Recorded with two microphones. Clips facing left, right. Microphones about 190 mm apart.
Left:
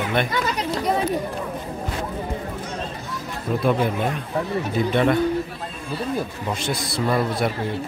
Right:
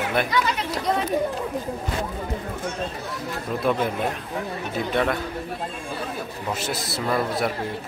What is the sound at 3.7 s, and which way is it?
Speech, centre (ahead or behind).